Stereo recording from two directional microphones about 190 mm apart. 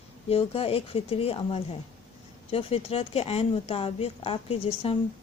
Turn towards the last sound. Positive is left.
turn(degrees=30)  # may be behind; listen again after turning